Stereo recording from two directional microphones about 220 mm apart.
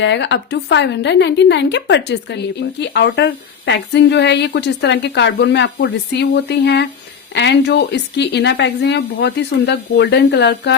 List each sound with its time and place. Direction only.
0.0 s a woman's voice: 55° left (ahead or behind)